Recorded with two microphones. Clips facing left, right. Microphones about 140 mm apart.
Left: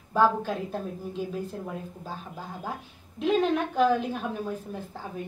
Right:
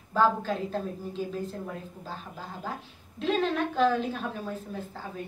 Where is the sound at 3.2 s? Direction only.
15° left (ahead or behind).